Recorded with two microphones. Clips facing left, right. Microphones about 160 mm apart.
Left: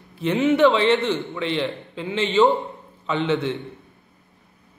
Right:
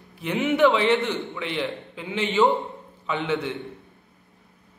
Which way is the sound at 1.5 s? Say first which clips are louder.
Left 3 dB; 25° left (ahead or behind).